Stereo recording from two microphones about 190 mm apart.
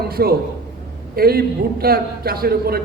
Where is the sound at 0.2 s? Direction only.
55° right (ahead or behind).